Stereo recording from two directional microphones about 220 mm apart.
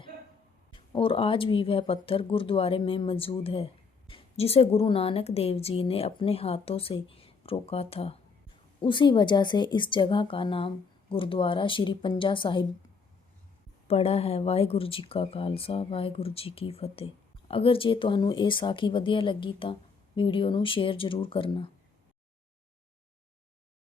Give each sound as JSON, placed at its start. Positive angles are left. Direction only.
{"t": 0.7, "sound": "speech", "side_deg": 25}
{"t": 13.8, "sound": "speech", "side_deg": 25}